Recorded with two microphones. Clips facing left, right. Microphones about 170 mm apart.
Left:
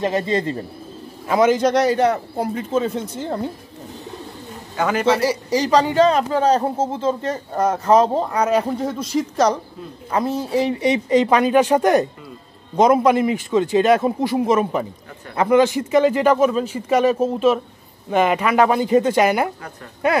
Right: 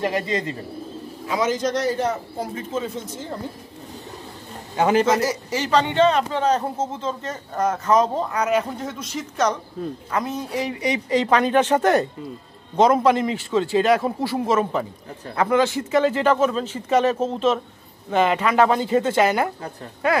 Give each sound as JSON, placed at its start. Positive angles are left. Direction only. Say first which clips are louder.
{"t": 0.0, "sound": "speech", "louder": "left 3 dB", "side_deg": 30}
{"t": 1.2, "sound": "a man's voice", "louder": "left 7 dB", "side_deg": 55}
{"t": 4.7, "sound": "a man's voice", "louder": "right 3 dB", "side_deg": -30}
{"t": 5.0, "sound": "speech", "louder": "left 3 dB", "side_deg": 30}